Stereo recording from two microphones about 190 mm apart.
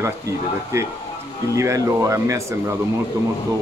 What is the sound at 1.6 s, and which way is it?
Speech, 15° right (ahead or behind).